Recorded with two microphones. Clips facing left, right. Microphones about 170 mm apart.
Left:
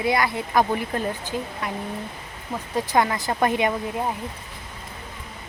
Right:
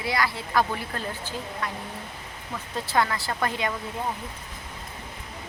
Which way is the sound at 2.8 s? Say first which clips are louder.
Left 4 dB; 15° left (ahead or behind).